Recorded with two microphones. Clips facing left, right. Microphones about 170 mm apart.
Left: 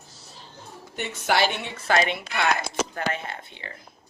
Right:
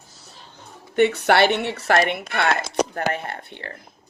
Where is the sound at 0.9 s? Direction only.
65° right (ahead or behind).